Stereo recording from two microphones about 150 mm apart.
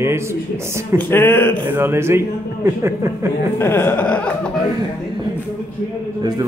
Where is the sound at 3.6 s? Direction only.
15° left (ahead or behind).